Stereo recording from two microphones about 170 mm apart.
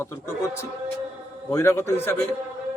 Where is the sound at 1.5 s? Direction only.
15° left (ahead or behind).